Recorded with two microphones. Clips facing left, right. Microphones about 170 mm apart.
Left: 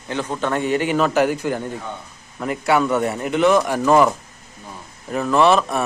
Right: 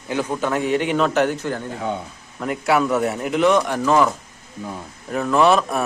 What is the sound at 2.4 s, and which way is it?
A man's voice, centre (ahead or behind).